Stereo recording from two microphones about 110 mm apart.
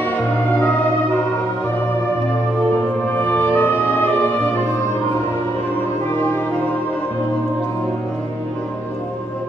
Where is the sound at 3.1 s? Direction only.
15° left (ahead or behind).